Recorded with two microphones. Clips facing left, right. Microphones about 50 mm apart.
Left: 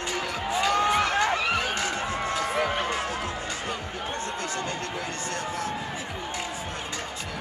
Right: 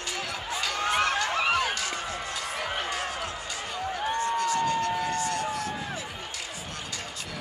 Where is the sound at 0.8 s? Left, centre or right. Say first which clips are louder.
Even; centre.